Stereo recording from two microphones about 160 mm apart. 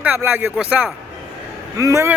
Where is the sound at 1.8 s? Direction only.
20° right (ahead or behind).